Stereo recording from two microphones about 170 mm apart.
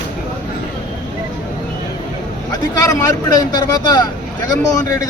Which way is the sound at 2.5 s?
20° left (ahead or behind).